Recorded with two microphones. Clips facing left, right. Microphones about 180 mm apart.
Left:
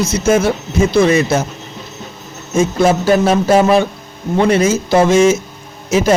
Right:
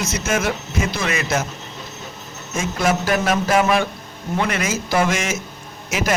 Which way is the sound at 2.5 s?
30° left (ahead or behind).